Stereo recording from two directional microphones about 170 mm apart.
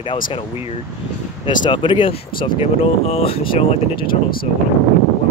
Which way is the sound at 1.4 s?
30° left (ahead or behind).